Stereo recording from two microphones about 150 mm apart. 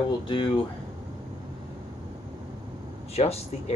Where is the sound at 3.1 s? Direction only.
45° left (ahead or behind).